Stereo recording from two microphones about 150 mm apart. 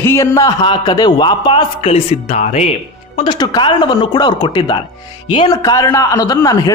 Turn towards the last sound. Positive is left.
turn(degrees=25)  # may be behind; listen again after turning